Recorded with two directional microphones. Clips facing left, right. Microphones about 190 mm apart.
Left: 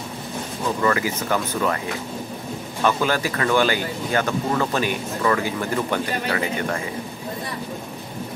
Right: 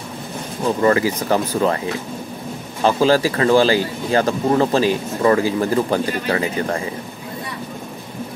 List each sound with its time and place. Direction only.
0.8 s speech: 35° right (ahead or behind)
2.8 s speech: 30° right (ahead or behind)